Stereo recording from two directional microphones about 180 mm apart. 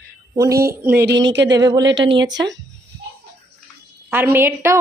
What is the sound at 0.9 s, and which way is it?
Speech, 75° right (ahead or behind).